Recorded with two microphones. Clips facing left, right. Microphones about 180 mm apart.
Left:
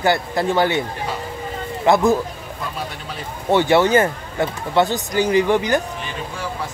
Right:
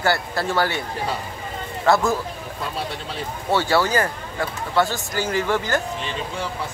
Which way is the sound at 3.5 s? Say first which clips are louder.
Left 5 dB; 20° left (ahead or behind).